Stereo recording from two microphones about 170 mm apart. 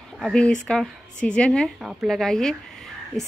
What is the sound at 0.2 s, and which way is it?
A woman's voice, 5° left (ahead or behind).